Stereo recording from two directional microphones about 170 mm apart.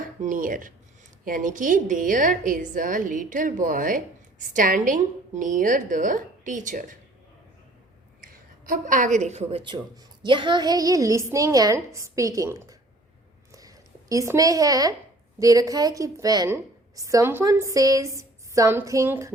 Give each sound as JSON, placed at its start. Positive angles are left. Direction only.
{"t": 0.2, "sound": "a woman's voice", "side_deg": -50}
{"t": 8.2, "sound": "a woman's voice", "side_deg": -55}
{"t": 13.5, "sound": "a sound", "side_deg": -20}
{"t": 15.4, "sound": "a woman's voice", "side_deg": -20}